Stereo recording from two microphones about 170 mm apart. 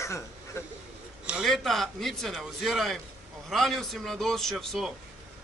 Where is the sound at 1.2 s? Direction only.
5° right (ahead or behind).